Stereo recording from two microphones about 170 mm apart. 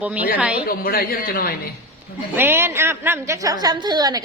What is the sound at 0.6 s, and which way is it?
Speech, 60° left (ahead or behind).